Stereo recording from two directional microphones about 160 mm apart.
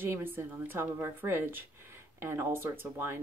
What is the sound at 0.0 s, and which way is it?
A woman's voice, 15° right (ahead or behind).